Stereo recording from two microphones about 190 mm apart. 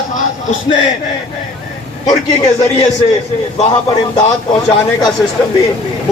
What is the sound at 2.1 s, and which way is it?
Speech, 20° left (ahead or behind).